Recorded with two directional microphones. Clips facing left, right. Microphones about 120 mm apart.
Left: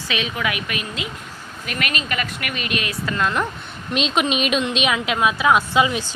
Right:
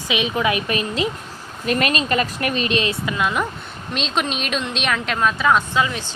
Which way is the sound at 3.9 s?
5° left (ahead or behind).